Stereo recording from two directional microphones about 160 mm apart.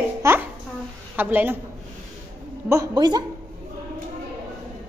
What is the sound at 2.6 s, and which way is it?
Speech, 25° right (ahead or behind).